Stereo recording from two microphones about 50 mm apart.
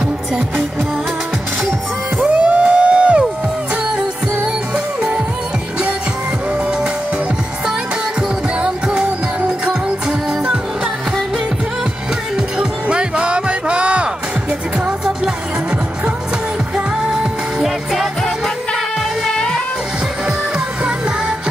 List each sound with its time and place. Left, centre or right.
2.2 s music: right
4.7 s music: centre
8.5 s music: centre
12.4 s music: centre
16.7 s music: centre
19.3 s music: centre
20.2 s music: centre